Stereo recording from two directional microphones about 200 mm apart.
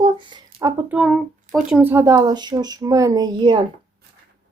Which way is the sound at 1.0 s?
Centre (ahead or behind).